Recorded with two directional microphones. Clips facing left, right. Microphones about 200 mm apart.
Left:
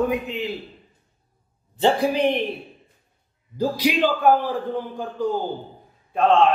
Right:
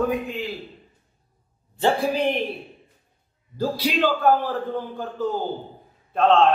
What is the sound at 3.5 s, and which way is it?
A man's voice, 15° left (ahead or behind).